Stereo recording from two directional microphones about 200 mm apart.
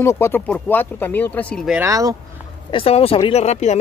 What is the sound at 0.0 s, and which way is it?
Speech, 15° left (ahead or behind).